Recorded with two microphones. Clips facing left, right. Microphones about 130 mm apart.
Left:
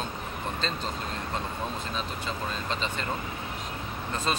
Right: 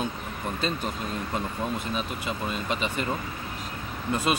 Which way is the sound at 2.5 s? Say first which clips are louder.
Right 3 dB; 10° right (ahead or behind).